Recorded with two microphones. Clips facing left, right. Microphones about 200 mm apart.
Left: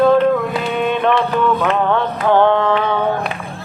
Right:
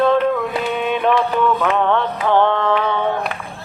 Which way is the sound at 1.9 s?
5° left (ahead or behind).